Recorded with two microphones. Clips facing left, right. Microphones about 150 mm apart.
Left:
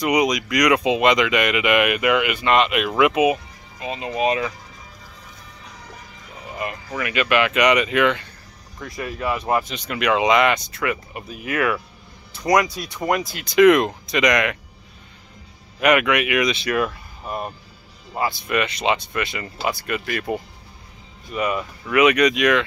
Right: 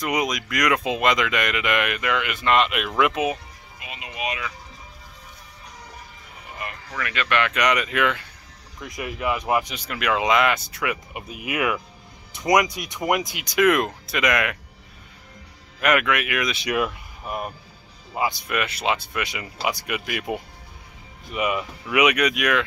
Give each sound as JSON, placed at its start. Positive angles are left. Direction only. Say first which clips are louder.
{"t": 0.0, "sound": "speech", "louder": "left 5 dB", "side_deg": 0}
{"t": 3.8, "sound": "speech", "louder": "left 9 dB", "side_deg": 35}
{"t": 6.6, "sound": "speech", "louder": "left 5 dB", "side_deg": 20}
{"t": 8.8, "sound": "speech", "louder": "left 1 dB", "side_deg": -20}
{"t": 9.8, "sound": "speech", "louder": "left 5 dB", "side_deg": 0}
{"t": 15.8, "sound": "speech", "louder": "left 4 dB", "side_deg": 0}
{"t": 16.5, "sound": "speech", "louder": "left 2 dB", "side_deg": -15}